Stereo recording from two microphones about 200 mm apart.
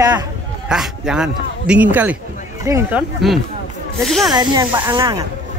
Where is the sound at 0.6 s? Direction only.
5° right (ahead or behind).